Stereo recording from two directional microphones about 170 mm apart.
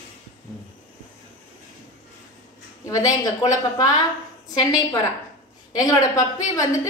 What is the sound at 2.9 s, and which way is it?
Speech, 20° left (ahead or behind).